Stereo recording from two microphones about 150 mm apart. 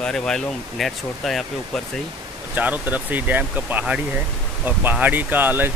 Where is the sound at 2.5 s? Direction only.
10° right (ahead or behind).